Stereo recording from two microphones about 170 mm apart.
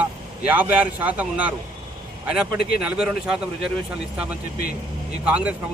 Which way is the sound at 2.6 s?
65° left (ahead or behind).